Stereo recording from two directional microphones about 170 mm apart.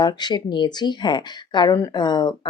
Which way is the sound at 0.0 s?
25° left (ahead or behind).